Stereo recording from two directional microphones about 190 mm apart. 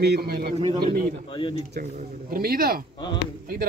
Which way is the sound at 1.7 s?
50° right (ahead or behind).